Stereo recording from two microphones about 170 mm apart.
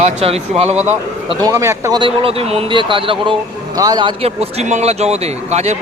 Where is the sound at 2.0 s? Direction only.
35° right (ahead or behind).